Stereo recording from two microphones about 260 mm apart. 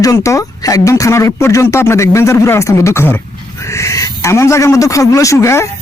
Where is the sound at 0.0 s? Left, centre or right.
Centre.